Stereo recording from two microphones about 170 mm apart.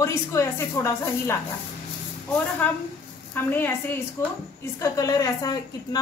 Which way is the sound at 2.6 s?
10° left (ahead or behind).